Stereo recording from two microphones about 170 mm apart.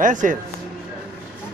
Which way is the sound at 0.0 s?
50° right (ahead or behind).